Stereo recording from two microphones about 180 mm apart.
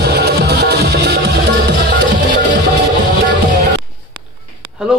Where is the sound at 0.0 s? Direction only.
65° right (ahead or behind).